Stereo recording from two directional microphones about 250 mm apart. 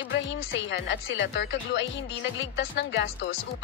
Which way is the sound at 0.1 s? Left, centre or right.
Left.